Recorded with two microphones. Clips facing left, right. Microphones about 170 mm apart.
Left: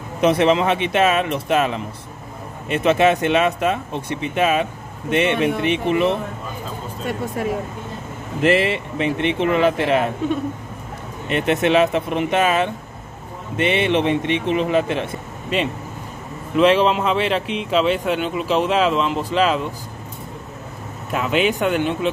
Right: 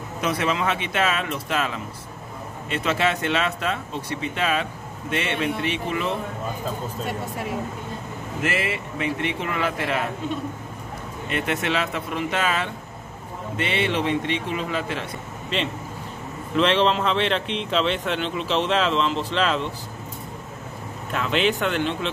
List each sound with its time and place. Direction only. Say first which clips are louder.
0.2 s speech: left 8 dB; 25° left (ahead or behind)
8.4 s speech: left 9 dB; 25° left (ahead or behind)
11.2 s speech: left 7 dB; 20° left (ahead or behind)
21.1 s speech: left 3 dB; 10° left (ahead or behind)